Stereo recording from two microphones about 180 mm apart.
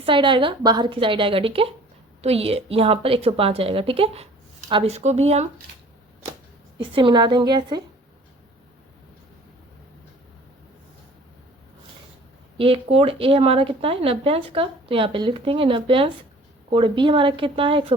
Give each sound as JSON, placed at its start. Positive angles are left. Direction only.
{"t": 0.0, "sound": "a woman's voice", "side_deg": -30}
{"t": 6.7, "sound": "a woman's voice", "side_deg": -30}
{"t": 12.5, "sound": "a woman's voice", "side_deg": -30}